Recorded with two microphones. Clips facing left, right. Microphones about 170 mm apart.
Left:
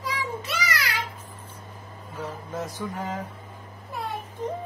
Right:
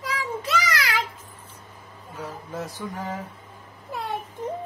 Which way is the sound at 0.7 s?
90° right.